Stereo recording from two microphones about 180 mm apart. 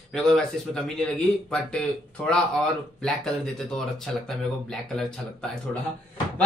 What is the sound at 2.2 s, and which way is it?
Speech, 5° left (ahead or behind).